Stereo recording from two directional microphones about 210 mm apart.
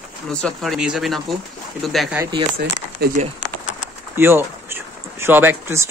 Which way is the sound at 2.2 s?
20° right (ahead or behind).